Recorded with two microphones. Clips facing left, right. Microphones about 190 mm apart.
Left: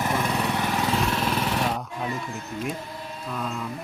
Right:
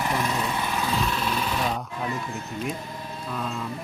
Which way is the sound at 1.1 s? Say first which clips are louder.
Left 2 dB; 70° left (ahead or behind).